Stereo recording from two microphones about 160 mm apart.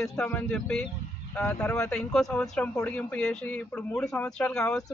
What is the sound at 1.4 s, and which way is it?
Speech, 15° left (ahead or behind).